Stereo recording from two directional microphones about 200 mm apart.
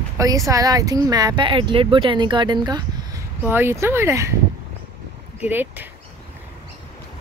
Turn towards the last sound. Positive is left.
turn(degrees=-10)  # may be behind; listen again after turning